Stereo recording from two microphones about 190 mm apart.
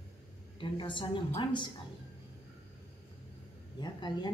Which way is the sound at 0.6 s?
25° left (ahead or behind).